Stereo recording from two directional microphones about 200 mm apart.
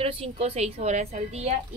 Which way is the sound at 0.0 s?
30° right (ahead or behind).